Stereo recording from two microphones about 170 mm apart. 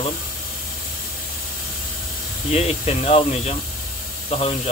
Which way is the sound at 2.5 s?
40° left (ahead or behind).